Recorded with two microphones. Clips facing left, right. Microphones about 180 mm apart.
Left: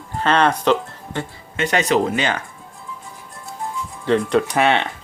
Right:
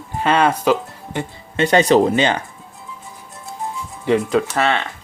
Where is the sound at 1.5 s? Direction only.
30° right (ahead or behind).